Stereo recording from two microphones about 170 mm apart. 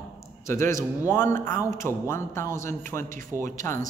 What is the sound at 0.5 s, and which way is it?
Speech, 15° left (ahead or behind).